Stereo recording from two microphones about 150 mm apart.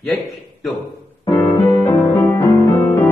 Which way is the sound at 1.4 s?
30° left (ahead or behind).